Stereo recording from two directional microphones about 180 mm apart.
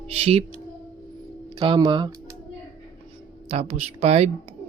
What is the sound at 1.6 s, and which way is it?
Speech, 25° right (ahead or behind).